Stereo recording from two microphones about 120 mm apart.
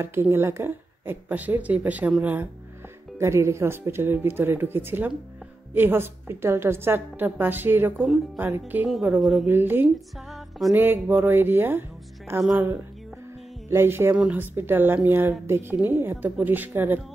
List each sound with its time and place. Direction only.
0.0 s a woman's voice: 20° right (ahead or behind)
3.2 s a woman's voice: 25° right (ahead or behind)
8.8 s a woman's voice: 5° right (ahead or behind)
9.5 s a woman's voice: 20° right (ahead or behind)
13.7 s a woman's voice: 20° right (ahead or behind)